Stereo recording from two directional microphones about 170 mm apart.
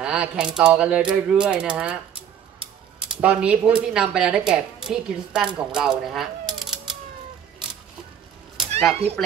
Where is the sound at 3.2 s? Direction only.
10° right (ahead or behind).